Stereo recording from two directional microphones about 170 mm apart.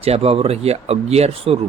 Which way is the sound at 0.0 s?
35° right (ahead or behind).